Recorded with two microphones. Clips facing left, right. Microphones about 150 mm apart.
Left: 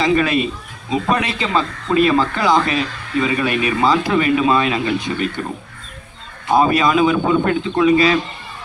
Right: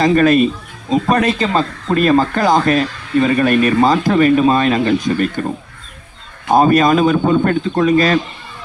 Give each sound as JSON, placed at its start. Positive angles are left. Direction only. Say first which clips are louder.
{"t": 0.0, "sound": "speech", "louder": "right 5 dB", "side_deg": -45}
{"t": 6.5, "sound": "speech", "louder": "right 3 dB", "side_deg": -45}